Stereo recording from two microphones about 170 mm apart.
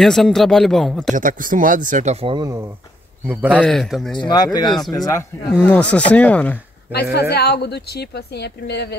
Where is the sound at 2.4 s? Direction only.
15° right (ahead or behind).